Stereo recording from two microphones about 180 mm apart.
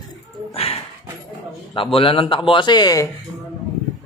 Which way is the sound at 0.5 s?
35° left (ahead or behind).